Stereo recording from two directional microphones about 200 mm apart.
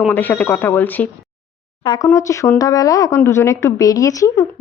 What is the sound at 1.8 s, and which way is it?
Speech, 20° left (ahead or behind).